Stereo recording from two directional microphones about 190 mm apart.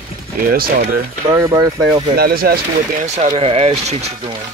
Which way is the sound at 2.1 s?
55° right (ahead or behind).